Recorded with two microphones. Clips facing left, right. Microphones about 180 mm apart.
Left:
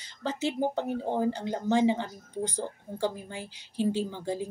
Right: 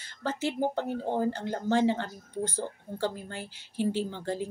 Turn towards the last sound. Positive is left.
turn(degrees=10)  # may be behind; listen again after turning